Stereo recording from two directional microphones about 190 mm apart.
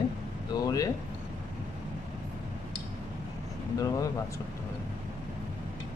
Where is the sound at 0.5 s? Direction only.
20° left (ahead or behind).